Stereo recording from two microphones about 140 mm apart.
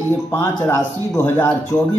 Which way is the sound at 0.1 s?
15° left (ahead or behind).